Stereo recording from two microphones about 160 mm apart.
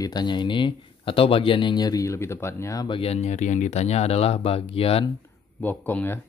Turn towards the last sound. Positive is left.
turn(degrees=10)  # may be behind; listen again after turning